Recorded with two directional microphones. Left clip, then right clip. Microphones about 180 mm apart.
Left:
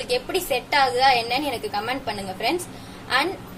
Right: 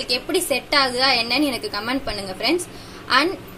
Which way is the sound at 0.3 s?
30° right (ahead or behind).